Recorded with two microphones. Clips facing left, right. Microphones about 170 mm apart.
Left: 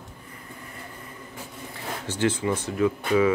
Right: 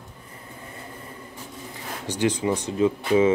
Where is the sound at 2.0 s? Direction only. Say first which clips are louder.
Right 2 dB; 15° right (ahead or behind).